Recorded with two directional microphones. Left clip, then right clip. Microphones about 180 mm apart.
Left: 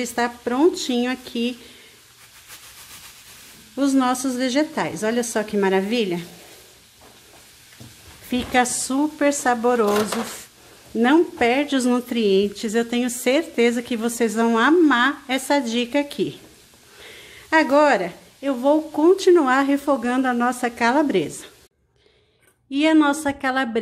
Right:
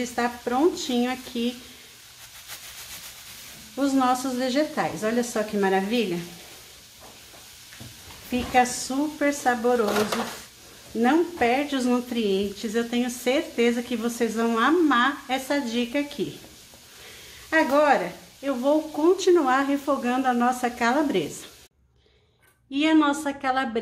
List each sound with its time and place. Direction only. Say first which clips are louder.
0.0 s a woman's voice: left 3 dB; 50° left (ahead or behind)
3.7 s a woman's voice: left 2 dB; 45° left (ahead or behind)
8.3 s a woman's voice: left 1 dB; 40° left (ahead or behind)
17.5 s speech: left 4 dB; 50° left (ahead or behind)
22.7 s speech: left 4 dB; 40° left (ahead or behind)